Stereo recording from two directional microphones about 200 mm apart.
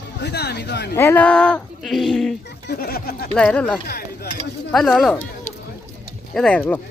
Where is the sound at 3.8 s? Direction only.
50° left (ahead or behind).